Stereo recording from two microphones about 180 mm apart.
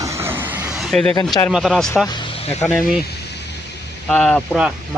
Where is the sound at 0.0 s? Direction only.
15° right (ahead or behind); by 1.1 s centre (ahead or behind).